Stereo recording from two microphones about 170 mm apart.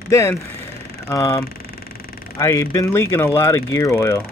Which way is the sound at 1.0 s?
20° left (ahead or behind).